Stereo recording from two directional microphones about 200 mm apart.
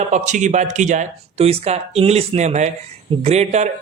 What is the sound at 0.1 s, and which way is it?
Speech, 35° right (ahead or behind).